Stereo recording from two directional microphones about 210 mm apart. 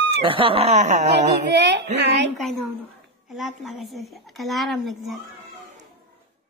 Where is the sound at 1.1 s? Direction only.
55° right (ahead or behind).